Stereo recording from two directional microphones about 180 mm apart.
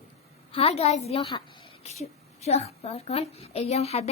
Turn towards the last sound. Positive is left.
turn(degrees=35)  # may be behind; listen again after turning